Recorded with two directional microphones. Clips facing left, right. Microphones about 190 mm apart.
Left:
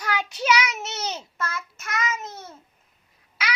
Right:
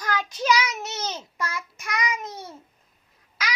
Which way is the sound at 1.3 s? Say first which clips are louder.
Even; 15° right (ahead or behind).